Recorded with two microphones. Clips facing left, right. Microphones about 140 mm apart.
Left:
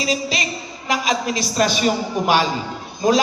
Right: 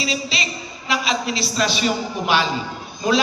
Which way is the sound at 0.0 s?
45° left (ahead or behind).